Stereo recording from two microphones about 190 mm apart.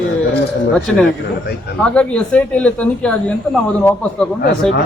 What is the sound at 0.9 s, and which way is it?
A man's voice, 5° left (ahead or behind).